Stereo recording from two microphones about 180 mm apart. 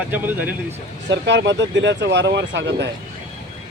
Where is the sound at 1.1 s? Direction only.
80° right.